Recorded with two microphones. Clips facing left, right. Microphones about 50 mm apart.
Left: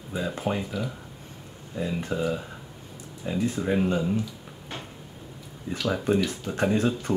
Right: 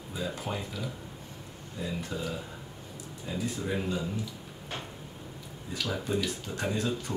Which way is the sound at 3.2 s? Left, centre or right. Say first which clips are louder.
Left 7 dB; left.